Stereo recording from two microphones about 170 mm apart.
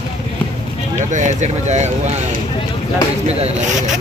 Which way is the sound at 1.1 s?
45° right (ahead or behind).